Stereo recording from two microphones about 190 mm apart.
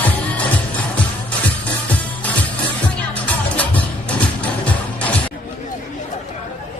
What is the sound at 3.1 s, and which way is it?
Music, 5° left (ahead or behind).